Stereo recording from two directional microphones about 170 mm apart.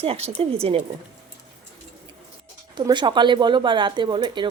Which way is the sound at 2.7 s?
25° right (ahead or behind).